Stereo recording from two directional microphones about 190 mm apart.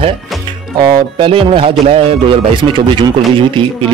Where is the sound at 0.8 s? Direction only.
30° right (ahead or behind).